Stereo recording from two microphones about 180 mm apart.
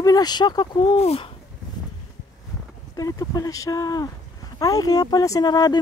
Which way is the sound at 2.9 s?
20° left (ahead or behind).